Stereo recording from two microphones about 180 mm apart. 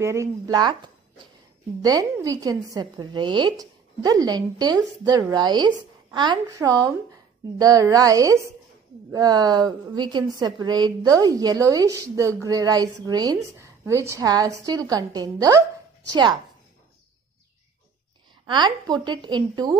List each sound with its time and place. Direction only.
0.0 s a woman's voice: 15° right (ahead or behind)
18.5 s a woman's voice: 25° right (ahead or behind)